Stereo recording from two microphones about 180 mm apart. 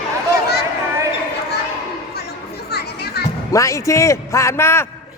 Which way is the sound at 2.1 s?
60° left (ahead or behind).